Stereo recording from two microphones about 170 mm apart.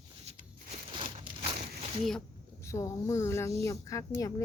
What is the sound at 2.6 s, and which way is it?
Speech, 15° left (ahead or behind).